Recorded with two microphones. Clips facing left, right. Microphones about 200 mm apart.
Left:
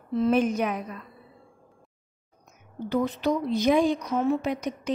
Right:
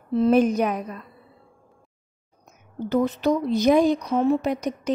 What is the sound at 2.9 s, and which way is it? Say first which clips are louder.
A woman's voice: right 4 dB; 45° right (ahead or behind).